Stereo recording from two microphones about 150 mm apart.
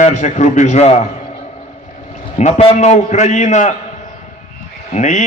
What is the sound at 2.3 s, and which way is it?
A man's voice, 50° left (ahead or behind).